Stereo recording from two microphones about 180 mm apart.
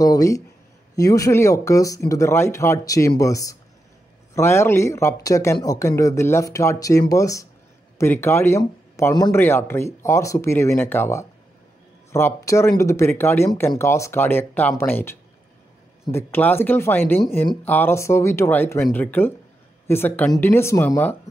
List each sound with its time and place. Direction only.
0.0 s speech: 20° left (ahead or behind)